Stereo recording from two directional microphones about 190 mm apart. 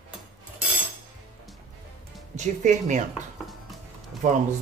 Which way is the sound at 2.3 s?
40° right (ahead or behind).